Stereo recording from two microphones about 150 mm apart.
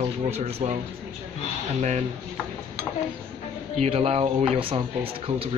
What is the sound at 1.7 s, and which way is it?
Speech, 50° right (ahead or behind).